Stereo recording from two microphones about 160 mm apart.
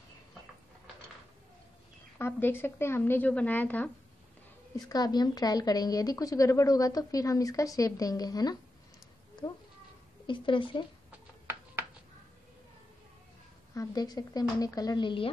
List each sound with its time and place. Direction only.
2.1 s speech: 15° left (ahead or behind)
4.7 s speech: 25° left (ahead or behind)
10.2 s speech: 30° left (ahead or behind)
13.7 s speech: 25° left (ahead or behind)